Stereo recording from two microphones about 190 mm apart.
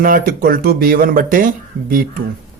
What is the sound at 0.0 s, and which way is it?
Speech, 50° right (ahead or behind).